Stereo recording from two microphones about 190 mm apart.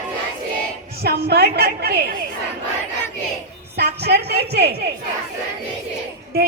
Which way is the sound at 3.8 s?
60° right (ahead or behind).